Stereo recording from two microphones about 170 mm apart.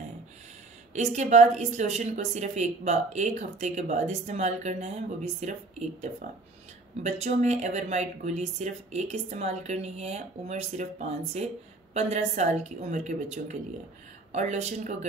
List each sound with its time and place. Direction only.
1.1 s a woman's voice: 45° right (ahead or behind)